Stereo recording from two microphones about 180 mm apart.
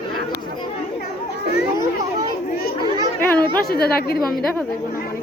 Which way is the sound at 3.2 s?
10° left (ahead or behind).